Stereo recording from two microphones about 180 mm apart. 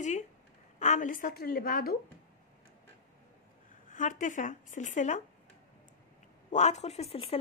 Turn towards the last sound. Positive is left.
turn(degrees=35)  # may be behind; listen again after turning